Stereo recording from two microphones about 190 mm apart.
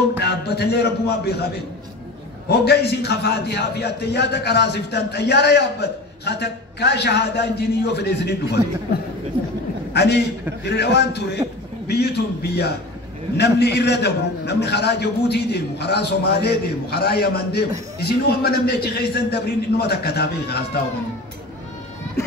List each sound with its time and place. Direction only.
0.2 s a man's voice: 60° left (ahead or behind)
2.6 s a man's voice: 60° left (ahead or behind)
9.9 s a man's voice: 60° left (ahead or behind)